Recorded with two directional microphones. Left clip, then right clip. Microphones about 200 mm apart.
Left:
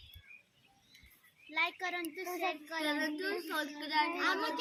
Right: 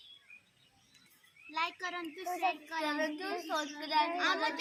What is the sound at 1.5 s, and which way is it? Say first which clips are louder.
A woman's voice: left 1 dB; 10° right (ahead or behind).